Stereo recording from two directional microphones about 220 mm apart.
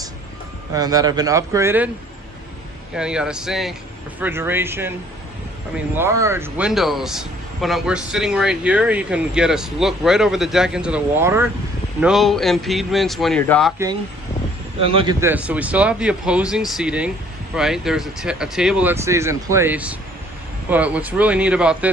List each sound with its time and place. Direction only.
0.7 s speech: 15° right (ahead or behind)
2.9 s speech: 5° right (ahead or behind)
12.0 s speech: centre (ahead or behind)
14.8 s speech: 25° right (ahead or behind)
15.2 s speech: 10° right (ahead or behind)